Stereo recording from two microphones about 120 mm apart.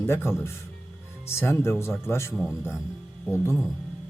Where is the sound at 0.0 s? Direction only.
20° left (ahead or behind).